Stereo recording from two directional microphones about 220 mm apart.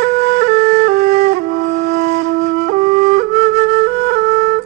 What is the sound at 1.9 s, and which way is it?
Flute, 45° right (ahead or behind).